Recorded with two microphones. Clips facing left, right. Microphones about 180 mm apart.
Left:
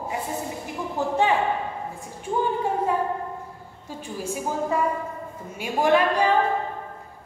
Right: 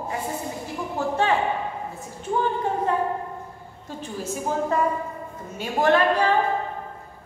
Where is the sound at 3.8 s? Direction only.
10° left (ahead or behind).